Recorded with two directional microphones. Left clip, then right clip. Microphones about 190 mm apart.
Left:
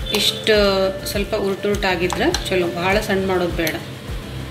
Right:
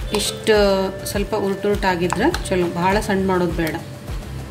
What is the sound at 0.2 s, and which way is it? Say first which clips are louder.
A woman's voice: even; 60° right (ahead or behind).